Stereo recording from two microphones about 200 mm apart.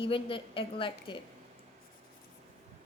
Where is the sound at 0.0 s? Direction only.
25° left (ahead or behind).